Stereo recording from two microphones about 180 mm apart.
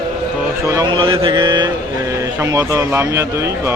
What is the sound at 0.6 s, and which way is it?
Speech, 20° right (ahead or behind).